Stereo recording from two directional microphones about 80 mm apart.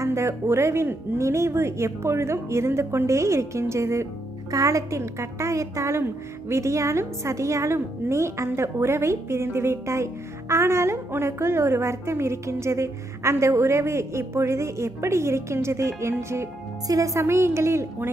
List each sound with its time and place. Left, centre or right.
0.0 s speech: right